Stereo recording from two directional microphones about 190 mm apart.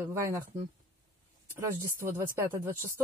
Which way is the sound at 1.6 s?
15° right (ahead or behind).